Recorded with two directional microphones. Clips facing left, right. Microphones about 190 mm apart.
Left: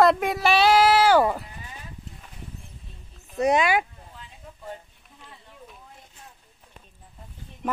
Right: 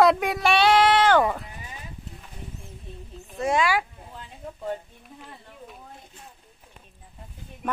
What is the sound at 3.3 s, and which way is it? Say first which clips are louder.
Speech: left 2 dB; 20° left (ahead or behind).